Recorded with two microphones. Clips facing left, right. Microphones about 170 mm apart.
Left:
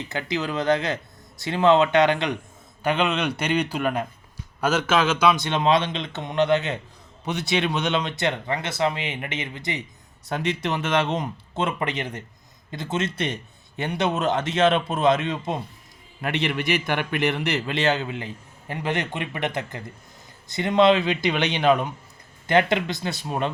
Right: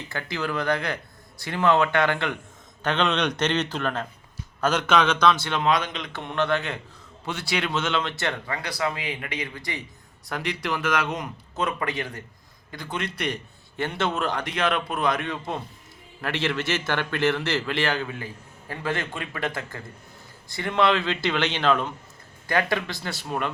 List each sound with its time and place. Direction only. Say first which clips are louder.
0.1 s a man's voice: left 1 dB; 20° left (ahead or behind)